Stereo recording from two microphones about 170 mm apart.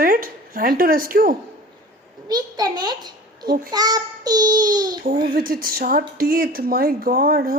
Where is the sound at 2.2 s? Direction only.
25° right (ahead or behind).